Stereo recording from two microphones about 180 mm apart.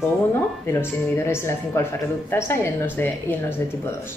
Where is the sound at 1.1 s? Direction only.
15° left (ahead or behind).